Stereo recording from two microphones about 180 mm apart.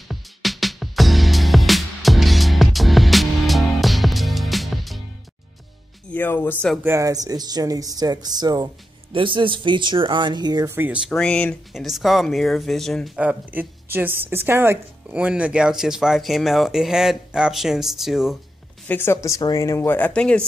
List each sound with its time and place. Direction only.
0.1 s music: centre (ahead or behind)
6.1 s speech: 10° left (ahead or behind)
6.8 s speech: 15° right (ahead or behind)
11.1 s speech: 5° left (ahead or behind)
18.9 s speech: 10° left (ahead or behind)